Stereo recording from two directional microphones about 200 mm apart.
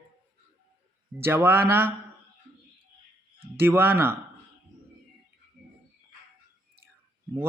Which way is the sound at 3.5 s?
10° right (ahead or behind).